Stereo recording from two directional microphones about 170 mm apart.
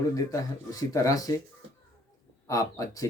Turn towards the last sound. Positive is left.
turn(degrees=20)  # may be behind; listen again after turning